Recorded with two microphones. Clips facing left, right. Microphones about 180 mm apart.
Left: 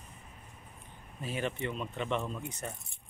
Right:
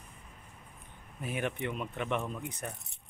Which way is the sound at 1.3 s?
10° right (ahead or behind).